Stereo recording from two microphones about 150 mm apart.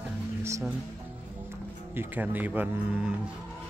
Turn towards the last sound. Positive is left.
turn(degrees=-10)  # may be behind; listen again after turning